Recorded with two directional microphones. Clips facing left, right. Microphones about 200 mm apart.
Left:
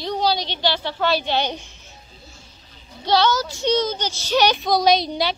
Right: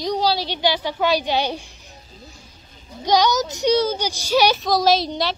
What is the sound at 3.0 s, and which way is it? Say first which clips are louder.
A child's voice: right 1 dB; 15° right (ahead or behind).